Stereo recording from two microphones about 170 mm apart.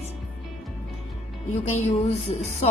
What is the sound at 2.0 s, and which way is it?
Speech, 40° left (ahead or behind).